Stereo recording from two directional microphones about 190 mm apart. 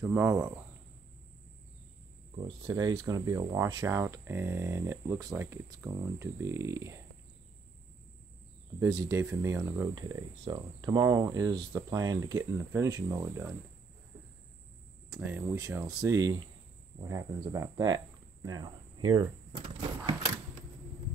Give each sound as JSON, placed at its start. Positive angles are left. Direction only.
{"t": 0.0, "sound": "speech", "side_deg": -10}
{"t": 2.3, "sound": "speech", "side_deg": -30}
{"t": 8.7, "sound": "speech", "side_deg": -15}
{"t": 15.4, "sound": "speech", "side_deg": -15}
{"t": 20.1, "sound": "a sound", "side_deg": -20}